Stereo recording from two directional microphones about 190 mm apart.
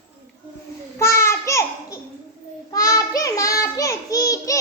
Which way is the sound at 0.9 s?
15° left (ahead or behind).